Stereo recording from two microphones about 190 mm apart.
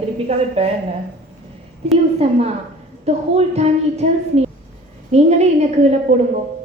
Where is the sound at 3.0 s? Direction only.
35° right (ahead or behind).